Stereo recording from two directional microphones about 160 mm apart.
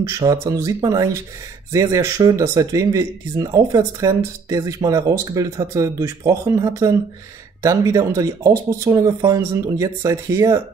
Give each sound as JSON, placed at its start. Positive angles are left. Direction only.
{"t": 0.0, "sound": "speech", "side_deg": -20}